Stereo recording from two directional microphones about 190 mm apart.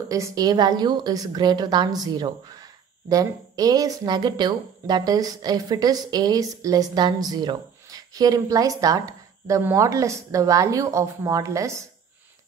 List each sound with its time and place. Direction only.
0.1 s a woman's voice: 20° right (ahead or behind)